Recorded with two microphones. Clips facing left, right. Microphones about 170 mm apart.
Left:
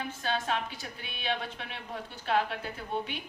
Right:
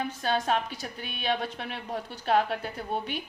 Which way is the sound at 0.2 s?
40° right (ahead or behind).